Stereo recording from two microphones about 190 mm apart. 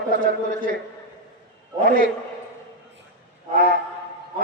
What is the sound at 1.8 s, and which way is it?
Speech, 50° right (ahead or behind).